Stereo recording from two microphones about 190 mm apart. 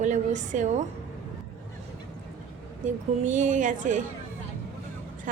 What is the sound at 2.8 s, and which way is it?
A woman's voice, 40° right (ahead or behind).